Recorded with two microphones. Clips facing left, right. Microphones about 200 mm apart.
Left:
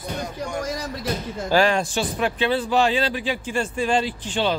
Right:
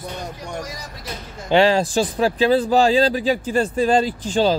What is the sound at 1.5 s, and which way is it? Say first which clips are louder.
Speech: right 4 dB; 25° right (ahead or behind).